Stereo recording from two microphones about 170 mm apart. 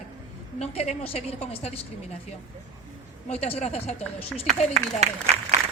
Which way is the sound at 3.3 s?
40° left (ahead or behind).